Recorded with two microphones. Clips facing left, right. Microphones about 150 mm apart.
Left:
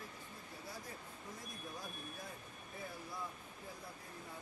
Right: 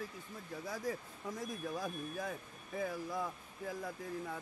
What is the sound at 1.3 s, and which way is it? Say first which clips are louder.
Speech: right 11 dB; 90° right.